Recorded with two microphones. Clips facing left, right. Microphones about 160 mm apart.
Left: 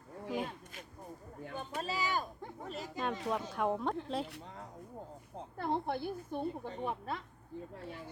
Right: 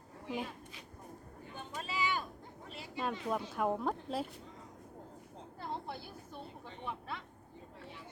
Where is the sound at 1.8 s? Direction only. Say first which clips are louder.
Left 1 dB; 40° left (ahead or behind).